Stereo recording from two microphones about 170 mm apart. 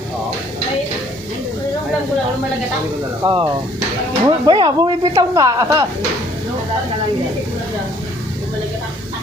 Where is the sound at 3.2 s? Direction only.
30° right (ahead or behind).